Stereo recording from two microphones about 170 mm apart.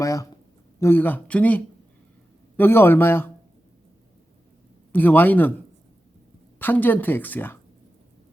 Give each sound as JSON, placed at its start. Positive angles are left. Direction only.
{"t": 0.0, "sound": "a sound", "side_deg": 20}
{"t": 0.8, "sound": "speech", "side_deg": 15}
{"t": 4.9, "sound": "speech", "side_deg": 10}
{"t": 6.6, "sound": "speech", "side_deg": 10}